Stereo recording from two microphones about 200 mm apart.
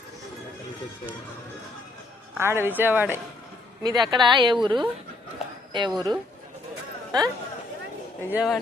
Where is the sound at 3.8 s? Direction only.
20° right (ahead or behind).